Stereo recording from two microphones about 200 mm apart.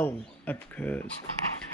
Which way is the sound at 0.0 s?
10° left (ahead or behind).